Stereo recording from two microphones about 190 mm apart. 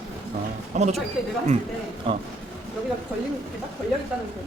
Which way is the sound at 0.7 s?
35° right (ahead or behind).